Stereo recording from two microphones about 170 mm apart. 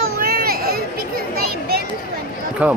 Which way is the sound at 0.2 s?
60° right (ahead or behind).